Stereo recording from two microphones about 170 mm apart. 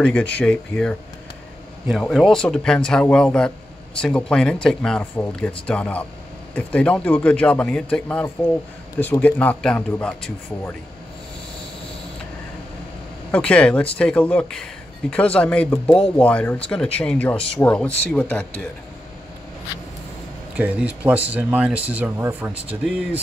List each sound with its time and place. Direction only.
0.0 s speech: 10° left (ahead or behind)
13.3 s speech: 5° left (ahead or behind)
20.5 s speech: 10° right (ahead or behind)
22.5 s speech: 35° right (ahead or behind)